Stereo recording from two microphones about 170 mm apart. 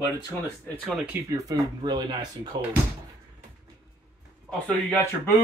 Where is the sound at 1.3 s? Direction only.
20° right (ahead or behind).